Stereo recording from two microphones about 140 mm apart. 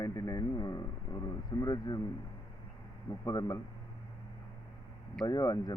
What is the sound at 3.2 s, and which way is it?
Speech, 25° left (ahead or behind).